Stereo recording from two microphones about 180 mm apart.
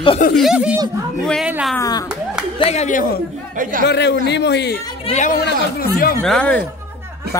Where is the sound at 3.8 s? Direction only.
75° left (ahead or behind).